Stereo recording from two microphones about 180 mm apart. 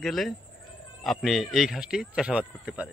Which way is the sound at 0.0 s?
Centre (ahead or behind).